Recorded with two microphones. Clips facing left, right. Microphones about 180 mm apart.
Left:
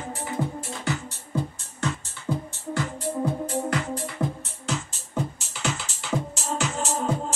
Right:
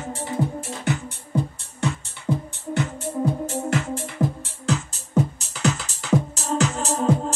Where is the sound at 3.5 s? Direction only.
45° right (ahead or behind).